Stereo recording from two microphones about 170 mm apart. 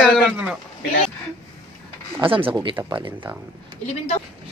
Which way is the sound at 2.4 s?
10° right (ahead or behind).